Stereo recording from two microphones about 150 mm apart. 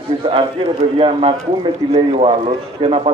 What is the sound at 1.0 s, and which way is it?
A woman's voice, 40° right (ahead or behind).